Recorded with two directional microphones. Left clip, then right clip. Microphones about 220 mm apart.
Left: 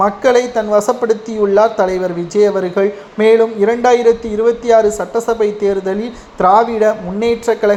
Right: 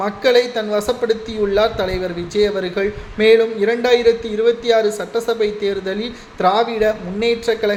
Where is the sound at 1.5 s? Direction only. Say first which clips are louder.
Left 6 dB; 20° left (ahead or behind).